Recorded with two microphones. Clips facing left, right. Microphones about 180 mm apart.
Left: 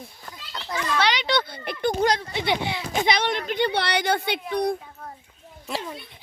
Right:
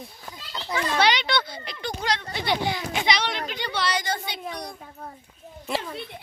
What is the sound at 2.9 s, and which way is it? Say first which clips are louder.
A child's voice: left 7 dB; 50° left (ahead or behind).